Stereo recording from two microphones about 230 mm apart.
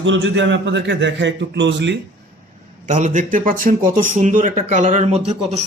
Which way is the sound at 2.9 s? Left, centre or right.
Right.